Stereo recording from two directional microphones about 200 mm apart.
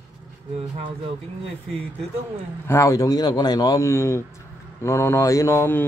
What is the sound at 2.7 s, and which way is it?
Speech, 15° left (ahead or behind).